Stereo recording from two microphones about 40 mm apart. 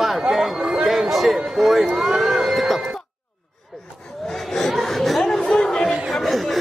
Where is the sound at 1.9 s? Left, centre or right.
Centre.